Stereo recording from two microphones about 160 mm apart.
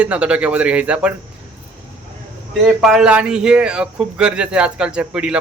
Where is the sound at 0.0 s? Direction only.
10° right (ahead or behind).